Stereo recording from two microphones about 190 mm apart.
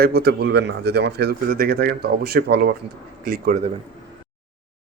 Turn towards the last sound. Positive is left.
turn(degrees=-50)  # may be behind; listen again after turning